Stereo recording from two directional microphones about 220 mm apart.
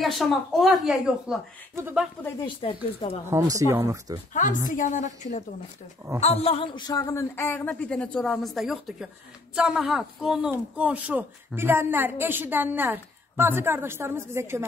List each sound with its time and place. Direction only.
0.0 s a woman's voice: centre (ahead or behind)
2.4 s speech: 25° left (ahead or behind)
3.3 s a woman's voice: 15° right (ahead or behind)
4.3 s a woman's voice: 35° left (ahead or behind); by 14.7 s 10° right (ahead or behind)